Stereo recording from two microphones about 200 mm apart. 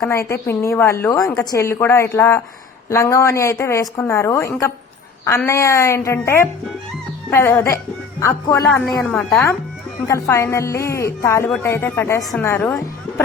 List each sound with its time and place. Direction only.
0.1 s speech: 15° left (ahead or behind)
8.7 s speech: centre (ahead or behind)